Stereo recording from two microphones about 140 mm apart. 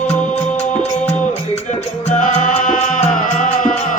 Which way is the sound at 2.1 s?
65° left (ahead or behind).